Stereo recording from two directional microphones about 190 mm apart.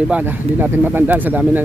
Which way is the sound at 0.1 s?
10° right (ahead or behind).